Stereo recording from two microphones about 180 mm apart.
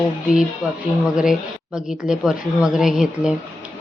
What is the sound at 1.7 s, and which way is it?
Speech, 5° right (ahead or behind).